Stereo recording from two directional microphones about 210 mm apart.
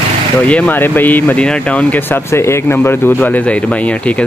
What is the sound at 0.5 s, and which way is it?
Speech, 5° left (ahead or behind).